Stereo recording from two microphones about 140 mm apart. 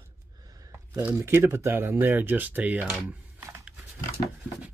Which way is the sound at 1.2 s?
20° right (ahead or behind).